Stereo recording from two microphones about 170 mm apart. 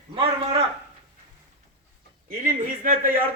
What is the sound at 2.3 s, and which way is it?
Speech, 55° right (ahead or behind).